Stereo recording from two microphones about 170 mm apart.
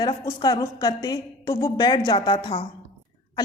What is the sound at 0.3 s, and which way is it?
A woman's voice, 20° left (ahead or behind).